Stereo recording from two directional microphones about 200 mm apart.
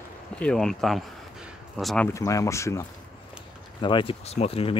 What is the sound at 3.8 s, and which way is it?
Speech, 25° left (ahead or behind).